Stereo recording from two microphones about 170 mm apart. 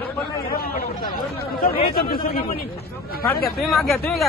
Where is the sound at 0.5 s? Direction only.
60° left (ahead or behind).